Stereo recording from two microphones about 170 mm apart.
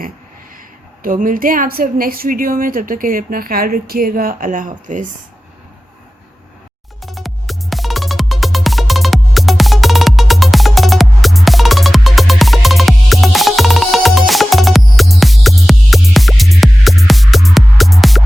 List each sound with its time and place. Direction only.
1.0 s a woman's voice: 55° right (ahead or behind)
7.0 s music: centre (ahead or behind)